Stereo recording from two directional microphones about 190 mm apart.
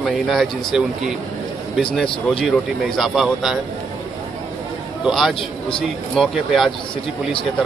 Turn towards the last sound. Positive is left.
turn(degrees=0)  # may be behind; listen again after turning